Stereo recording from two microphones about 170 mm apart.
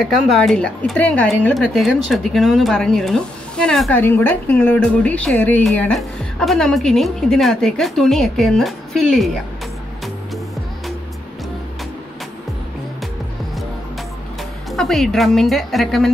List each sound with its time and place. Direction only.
0.0 s a woman's voice: centre (ahead or behind)
14.7 s a woman's voice: centre (ahead or behind)